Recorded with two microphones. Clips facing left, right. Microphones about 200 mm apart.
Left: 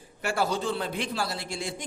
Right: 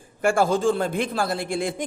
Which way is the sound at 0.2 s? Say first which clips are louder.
Right 8 dB; 50° right (ahead or behind).